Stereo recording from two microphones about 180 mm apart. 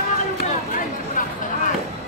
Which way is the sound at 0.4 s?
50° left (ahead or behind).